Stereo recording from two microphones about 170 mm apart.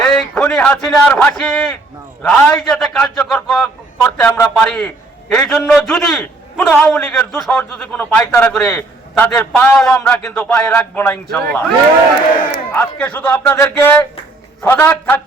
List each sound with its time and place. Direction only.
0.0 s a man's voice: 5° left (ahead or behind)
12.7 s a man's voice: 10° left (ahead or behind)